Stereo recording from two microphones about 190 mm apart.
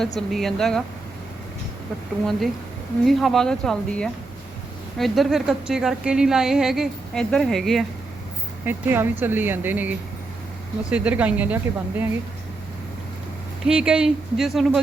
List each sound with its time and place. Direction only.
0.0 s a woman's voice: centre (ahead or behind)
3.1 s a woman's voice: centre (ahead or behind)
8.6 s speech: 10° right (ahead or behind)
13.7 s a woman's voice: 5° right (ahead or behind)